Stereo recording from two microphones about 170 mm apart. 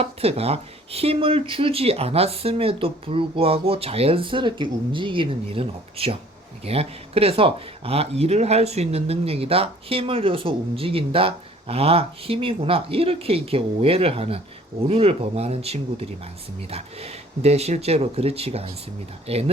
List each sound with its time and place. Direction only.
0.0 s speech: 35° right (ahead or behind)